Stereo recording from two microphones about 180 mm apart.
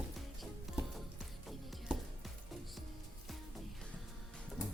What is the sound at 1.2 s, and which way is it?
Music, centre (ahead or behind).